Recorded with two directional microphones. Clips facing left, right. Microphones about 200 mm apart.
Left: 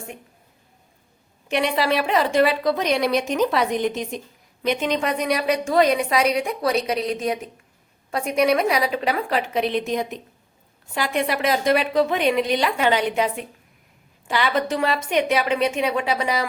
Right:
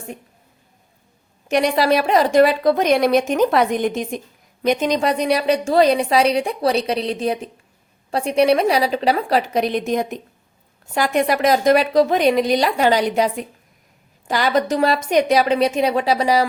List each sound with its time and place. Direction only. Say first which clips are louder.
1.5 s a woman's voice: right 5 dB; 40° right (ahead or behind)